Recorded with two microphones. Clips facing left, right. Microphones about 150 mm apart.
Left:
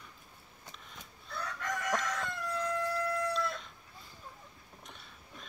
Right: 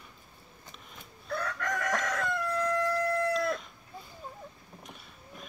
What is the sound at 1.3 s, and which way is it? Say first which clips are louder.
Crowing: right 5 dB; 65° right (ahead or behind).